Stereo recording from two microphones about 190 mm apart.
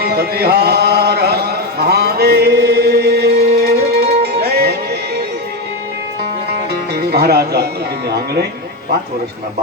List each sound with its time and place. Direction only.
0.0 s a sound: 55° right (ahead or behind)
6.9 s music: 55° right (ahead or behind)
8.1 s speech: 55° right (ahead or behind)